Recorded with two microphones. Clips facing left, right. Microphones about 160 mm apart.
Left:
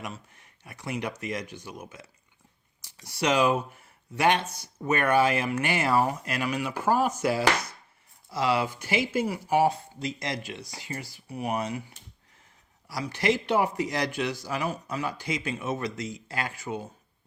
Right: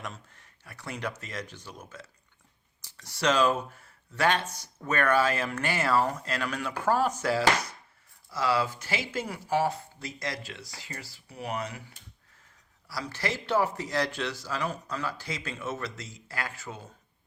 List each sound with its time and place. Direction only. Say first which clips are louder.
0.0 s speech: left 2 dB; 10° left (ahead or behind)